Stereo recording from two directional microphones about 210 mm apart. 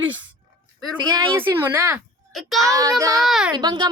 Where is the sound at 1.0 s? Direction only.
20° right (ahead or behind).